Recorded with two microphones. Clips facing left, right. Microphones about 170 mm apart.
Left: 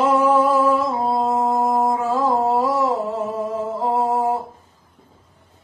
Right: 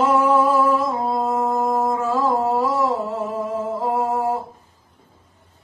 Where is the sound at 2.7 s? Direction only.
15° left (ahead or behind).